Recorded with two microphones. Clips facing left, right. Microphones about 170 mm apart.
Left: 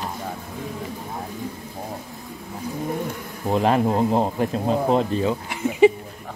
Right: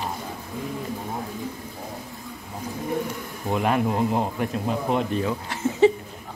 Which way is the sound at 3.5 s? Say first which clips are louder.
Left 4 dB; 30° left (ahead or behind).